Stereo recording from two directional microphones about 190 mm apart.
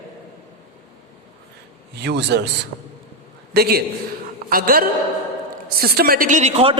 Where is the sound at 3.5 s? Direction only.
55° right (ahead or behind).